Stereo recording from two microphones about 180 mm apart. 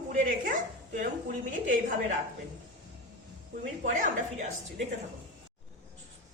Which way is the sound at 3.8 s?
45° right (ahead or behind).